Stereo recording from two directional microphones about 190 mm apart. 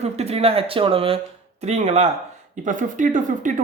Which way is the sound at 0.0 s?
35° right (ahead or behind).